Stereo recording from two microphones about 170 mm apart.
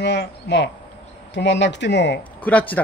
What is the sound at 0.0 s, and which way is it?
Speech, 90° left.